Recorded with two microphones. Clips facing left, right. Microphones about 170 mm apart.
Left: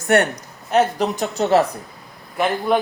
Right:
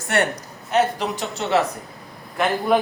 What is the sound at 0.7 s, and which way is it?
Speech, 40° left (ahead or behind).